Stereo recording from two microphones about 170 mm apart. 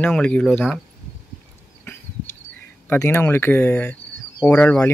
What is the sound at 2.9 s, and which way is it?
Speech, 15° left (ahead or behind).